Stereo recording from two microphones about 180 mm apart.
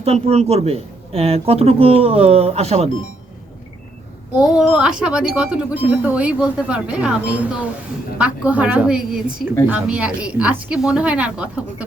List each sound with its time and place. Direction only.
0.0 s speech: 35° right (ahead or behind)
4.5 s speech: 5° right (ahead or behind)